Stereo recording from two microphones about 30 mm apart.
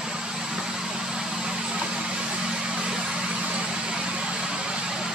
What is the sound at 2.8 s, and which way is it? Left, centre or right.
Vehicle, right.